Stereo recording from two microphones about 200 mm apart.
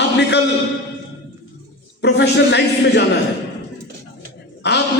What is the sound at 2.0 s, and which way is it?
A man's voice, 60° left (ahead or behind).